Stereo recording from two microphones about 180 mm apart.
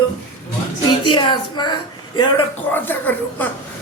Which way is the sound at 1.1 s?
25° left (ahead or behind).